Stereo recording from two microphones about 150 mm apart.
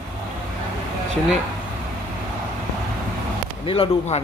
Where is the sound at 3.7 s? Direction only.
40° left (ahead or behind).